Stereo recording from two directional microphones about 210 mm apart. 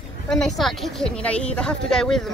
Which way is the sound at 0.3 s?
Centre (ahead or behind).